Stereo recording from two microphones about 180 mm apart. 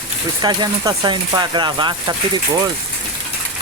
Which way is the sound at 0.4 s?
25° right (ahead or behind).